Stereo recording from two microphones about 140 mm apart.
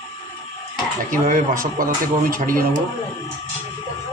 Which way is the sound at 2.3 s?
85° right.